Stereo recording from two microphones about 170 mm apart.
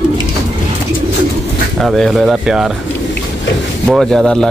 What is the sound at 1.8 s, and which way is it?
Speech, centre (ahead or behind).